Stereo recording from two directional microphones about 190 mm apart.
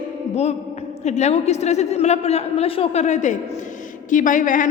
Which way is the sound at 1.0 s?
35° left (ahead or behind).